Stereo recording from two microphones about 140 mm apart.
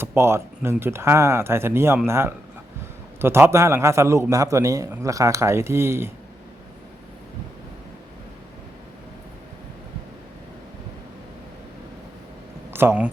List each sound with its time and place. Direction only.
0.0 s a man's voice: 20° right (ahead or behind)
12.7 s speech: 10° right (ahead or behind)